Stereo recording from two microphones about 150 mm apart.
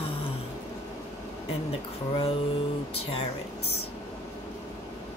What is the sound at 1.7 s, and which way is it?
Speech, 40° left (ahead or behind).